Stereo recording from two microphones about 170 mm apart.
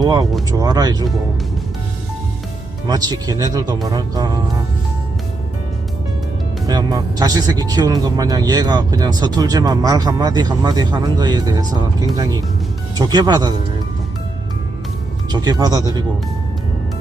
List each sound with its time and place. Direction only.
0.0 s speech: 25° right (ahead or behind)
2.8 s speech: 25° right (ahead or behind)
6.7 s speech: 25° right (ahead or behind)
15.3 s speech: 25° right (ahead or behind)